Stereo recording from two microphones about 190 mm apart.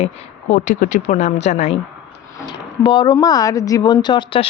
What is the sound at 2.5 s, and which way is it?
Speech, 25° left (ahead or behind).